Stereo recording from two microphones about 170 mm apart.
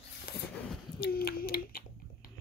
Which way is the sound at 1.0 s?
60° left (ahead or behind).